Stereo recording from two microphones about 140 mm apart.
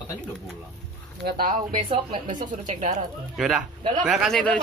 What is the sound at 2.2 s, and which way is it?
Speech, 60° right (ahead or behind).